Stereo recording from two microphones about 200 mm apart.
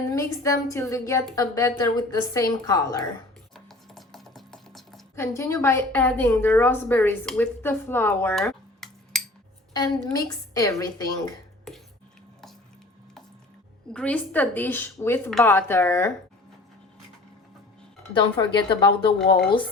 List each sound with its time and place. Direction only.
0.1 s a woman's voice: 15° left (ahead or behind)
3.5 s a sound: centre (ahead or behind)
5.1 s a woman's voice: 15° left (ahead or behind)
9.7 s a woman's voice: 20° left (ahead or behind)
13.9 s a woman's voice: 5° left (ahead or behind)
18.1 s speech: 25° left (ahead or behind)